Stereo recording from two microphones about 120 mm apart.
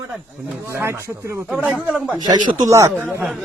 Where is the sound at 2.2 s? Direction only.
30° right (ahead or behind).